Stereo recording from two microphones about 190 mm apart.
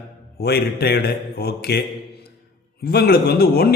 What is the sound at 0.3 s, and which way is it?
A man's voice, 55° left (ahead or behind).